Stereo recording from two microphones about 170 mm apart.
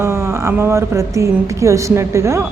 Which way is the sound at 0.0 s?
15° right (ahead or behind).